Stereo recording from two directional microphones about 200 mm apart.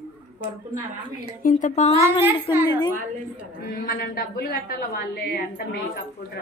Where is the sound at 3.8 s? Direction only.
45° left (ahead or behind).